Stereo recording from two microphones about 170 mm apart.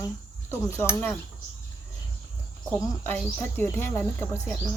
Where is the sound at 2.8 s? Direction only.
10° left (ahead or behind).